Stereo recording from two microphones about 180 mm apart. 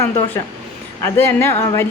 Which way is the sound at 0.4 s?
15° left (ahead or behind).